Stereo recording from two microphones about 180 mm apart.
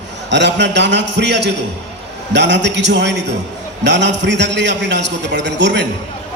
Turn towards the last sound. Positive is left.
turn(degrees=-75)  # may be behind; listen again after turning